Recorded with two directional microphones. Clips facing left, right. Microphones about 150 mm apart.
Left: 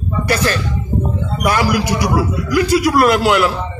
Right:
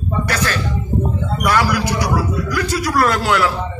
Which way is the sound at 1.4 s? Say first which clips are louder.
Left 2 dB; 15° left (ahead or behind).